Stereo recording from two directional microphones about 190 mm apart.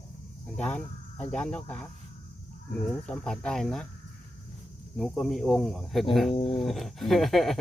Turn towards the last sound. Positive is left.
turn(degrees=0)  # may be behind; listen again after turning